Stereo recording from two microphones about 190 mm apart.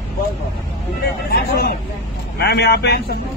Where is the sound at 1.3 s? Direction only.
50° left (ahead or behind).